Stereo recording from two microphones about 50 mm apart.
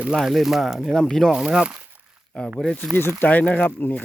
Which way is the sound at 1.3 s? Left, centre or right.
Centre.